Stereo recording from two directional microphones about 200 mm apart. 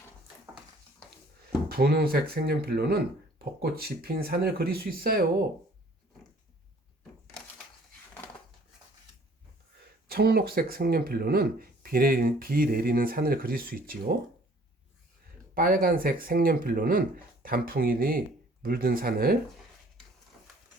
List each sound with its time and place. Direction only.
1.7 s speech: 55° right (ahead or behind)
10.1 s speech: 50° right (ahead or behind)
15.5 s speech: 45° right (ahead or behind)